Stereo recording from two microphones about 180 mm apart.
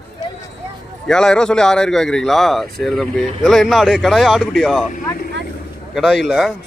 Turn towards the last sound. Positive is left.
turn(degrees=0)  # may be behind; listen again after turning